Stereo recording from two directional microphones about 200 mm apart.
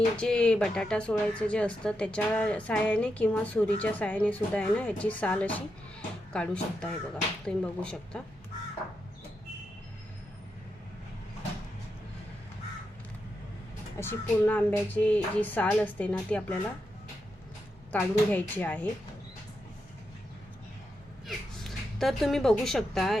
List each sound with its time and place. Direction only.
0.2 s a woman's voice: 5° left (ahead or behind)
13.9 s a woman's voice: 10° left (ahead or behind)
17.9 s a woman's voice: 10° left (ahead or behind)
21.2 s speech: centre (ahead or behind)